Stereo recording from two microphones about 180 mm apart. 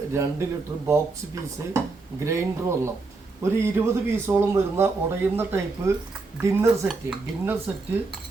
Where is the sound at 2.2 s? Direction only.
15° right (ahead or behind).